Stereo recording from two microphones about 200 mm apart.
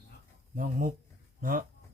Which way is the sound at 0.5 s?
45° right (ahead or behind).